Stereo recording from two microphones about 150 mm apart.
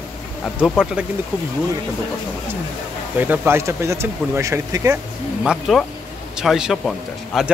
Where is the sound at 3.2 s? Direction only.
10° right (ahead or behind).